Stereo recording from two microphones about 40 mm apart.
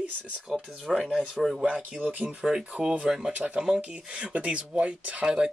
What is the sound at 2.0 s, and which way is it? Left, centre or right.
Speech, right.